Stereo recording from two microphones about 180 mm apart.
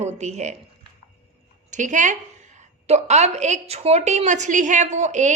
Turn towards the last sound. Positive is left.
turn(degrees=-40)  # may be behind; listen again after turning